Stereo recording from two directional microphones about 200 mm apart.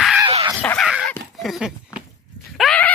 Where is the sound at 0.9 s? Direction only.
Centre (ahead or behind).